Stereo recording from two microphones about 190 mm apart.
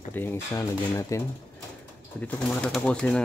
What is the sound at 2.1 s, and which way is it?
Speech, 5° left (ahead or behind).